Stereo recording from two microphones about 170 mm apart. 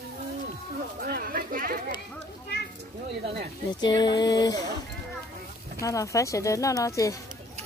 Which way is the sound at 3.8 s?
25° left (ahead or behind).